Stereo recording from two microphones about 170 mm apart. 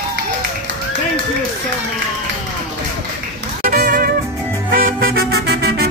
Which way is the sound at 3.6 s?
55° right (ahead or behind).